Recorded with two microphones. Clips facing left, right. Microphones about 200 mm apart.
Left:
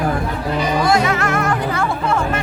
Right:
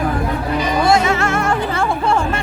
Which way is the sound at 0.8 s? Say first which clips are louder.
Right 3 dB; 25° right (ahead or behind).